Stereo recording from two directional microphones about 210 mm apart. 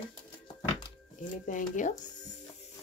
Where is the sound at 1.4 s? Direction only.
35° left (ahead or behind).